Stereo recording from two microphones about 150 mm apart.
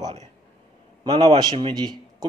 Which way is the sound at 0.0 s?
50° right (ahead or behind).